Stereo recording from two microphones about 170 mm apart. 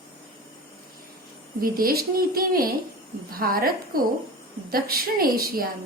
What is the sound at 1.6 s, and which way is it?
A woman's voice, 60° right (ahead or behind).